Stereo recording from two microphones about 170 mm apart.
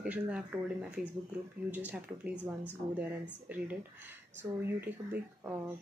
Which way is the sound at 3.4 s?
10° right (ahead or behind).